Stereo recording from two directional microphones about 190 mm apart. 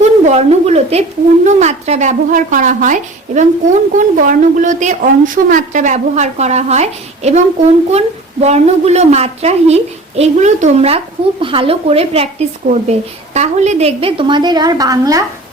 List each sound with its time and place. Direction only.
0.0 s a woman's voice: 35° right (ahead or behind); by 15.2 s 20° right (ahead or behind)